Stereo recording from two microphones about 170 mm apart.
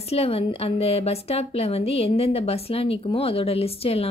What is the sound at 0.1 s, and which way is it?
A woman's voice, 35° left (ahead or behind).